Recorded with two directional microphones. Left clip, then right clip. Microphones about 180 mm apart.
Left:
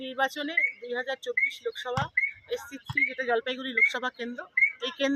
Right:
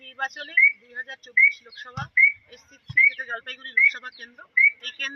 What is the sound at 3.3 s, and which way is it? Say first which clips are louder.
Speech: left 5 dB; 50° left (ahead or behind).